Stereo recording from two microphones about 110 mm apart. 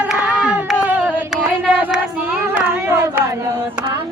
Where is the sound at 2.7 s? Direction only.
20° right (ahead or behind).